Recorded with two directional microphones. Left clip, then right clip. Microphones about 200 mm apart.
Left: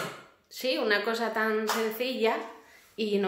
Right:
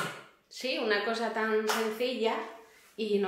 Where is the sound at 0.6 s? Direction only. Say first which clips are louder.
Left 3 dB; 35° left (ahead or behind).